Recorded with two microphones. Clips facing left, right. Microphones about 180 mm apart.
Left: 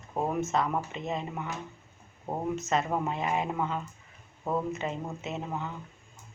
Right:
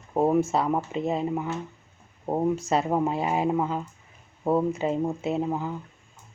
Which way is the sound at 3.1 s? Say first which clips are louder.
Right 6 dB; 35° right (ahead or behind).